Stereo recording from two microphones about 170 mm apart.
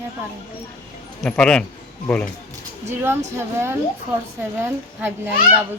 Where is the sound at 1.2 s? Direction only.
5° left (ahead or behind).